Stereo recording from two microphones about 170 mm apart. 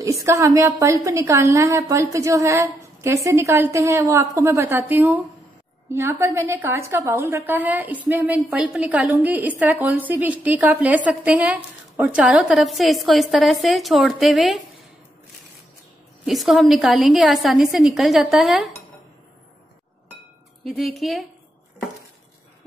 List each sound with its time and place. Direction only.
0.0 s a woman's voice: 20° right (ahead or behind); by 14.6 s centre (ahead or behind)
16.3 s a woman's voice: centre (ahead or behind)
20.6 s a woman's voice: centre (ahead or behind)